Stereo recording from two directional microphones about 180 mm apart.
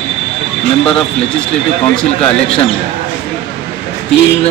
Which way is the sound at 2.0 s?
35° left (ahead or behind).